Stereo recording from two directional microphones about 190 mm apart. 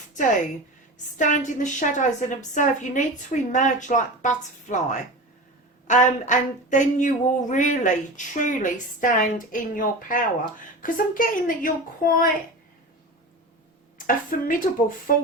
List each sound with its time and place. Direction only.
1.2 s speech: 40° left (ahead or behind)
14.1 s speech: 45° left (ahead or behind)